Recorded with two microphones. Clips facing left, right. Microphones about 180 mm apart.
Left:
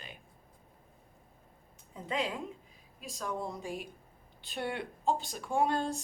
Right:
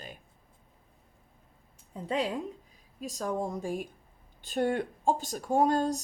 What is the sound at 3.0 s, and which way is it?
Speech, 40° right (ahead or behind).